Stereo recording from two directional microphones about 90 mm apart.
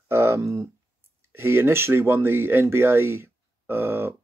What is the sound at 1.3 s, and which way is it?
Speech, 25° right (ahead or behind).